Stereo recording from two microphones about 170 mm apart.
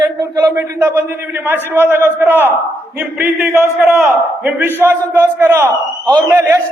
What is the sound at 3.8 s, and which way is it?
A man's voice, centre (ahead or behind).